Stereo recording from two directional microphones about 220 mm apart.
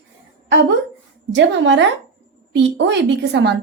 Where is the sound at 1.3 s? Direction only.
55° right (ahead or behind).